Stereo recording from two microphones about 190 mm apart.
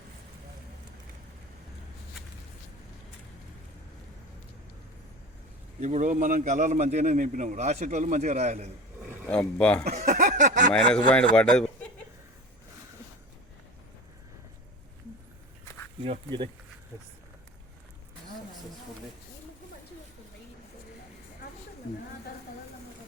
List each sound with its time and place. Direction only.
5.8 s a man's voice: 40° right (ahead or behind)
9.2 s speech: 5° left (ahead or behind)
9.9 s a man's voice: 40° right (ahead or behind)
10.8 s speech: 5° left (ahead or behind)
16.0 s speech: 25° right (ahead or behind)